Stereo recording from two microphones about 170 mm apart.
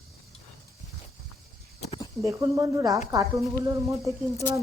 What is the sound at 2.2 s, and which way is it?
A woman's voice, 20° right (ahead or behind).